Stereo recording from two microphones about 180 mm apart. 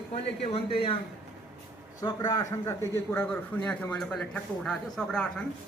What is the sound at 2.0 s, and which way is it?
A man's voice, 20° left (ahead or behind).